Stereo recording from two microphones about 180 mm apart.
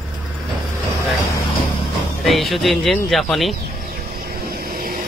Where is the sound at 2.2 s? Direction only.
Centre (ahead or behind).